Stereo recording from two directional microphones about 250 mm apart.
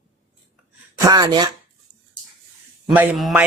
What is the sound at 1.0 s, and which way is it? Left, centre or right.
Speech, centre.